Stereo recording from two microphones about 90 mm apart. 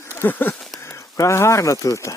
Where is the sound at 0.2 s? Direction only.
20° left (ahead or behind).